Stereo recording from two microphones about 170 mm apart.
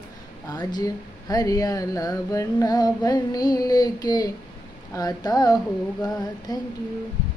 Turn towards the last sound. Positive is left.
turn(degrees=25)  # may be behind; listen again after turning